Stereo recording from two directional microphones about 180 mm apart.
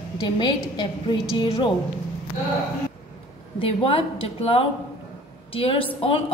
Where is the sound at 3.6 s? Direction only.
30° left (ahead or behind).